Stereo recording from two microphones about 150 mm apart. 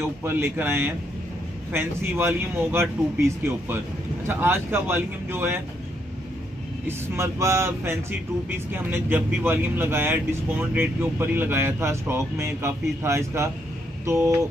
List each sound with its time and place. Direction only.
0.0 s speech: 15° right (ahead or behind)
6.9 s speech: 20° right (ahead or behind)